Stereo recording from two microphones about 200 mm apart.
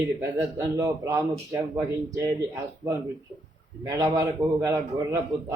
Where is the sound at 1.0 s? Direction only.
15° right (ahead or behind).